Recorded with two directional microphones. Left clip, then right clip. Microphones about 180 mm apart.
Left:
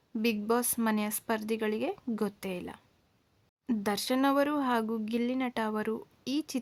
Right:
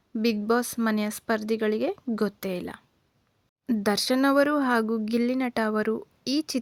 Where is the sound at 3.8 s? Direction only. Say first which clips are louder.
Right 5 dB; 25° right (ahead or behind).